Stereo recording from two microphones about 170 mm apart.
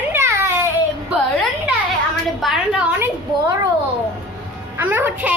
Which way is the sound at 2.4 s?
Centre (ahead or behind).